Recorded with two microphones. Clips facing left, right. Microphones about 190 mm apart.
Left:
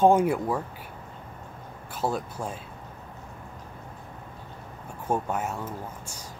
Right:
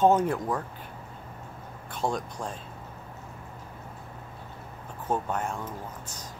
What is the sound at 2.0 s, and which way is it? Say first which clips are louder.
Speech: left 1 dB; 5° left (ahead or behind).